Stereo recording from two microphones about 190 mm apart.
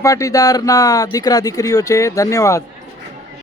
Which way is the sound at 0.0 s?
15° left (ahead or behind).